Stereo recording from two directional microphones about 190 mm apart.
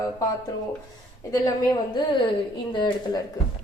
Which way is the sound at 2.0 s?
20° left (ahead or behind).